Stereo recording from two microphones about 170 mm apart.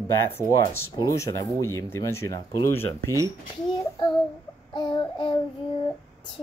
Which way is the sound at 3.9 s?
30° left (ahead or behind).